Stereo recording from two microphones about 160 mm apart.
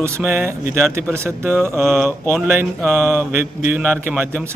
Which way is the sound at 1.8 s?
5° left (ahead or behind).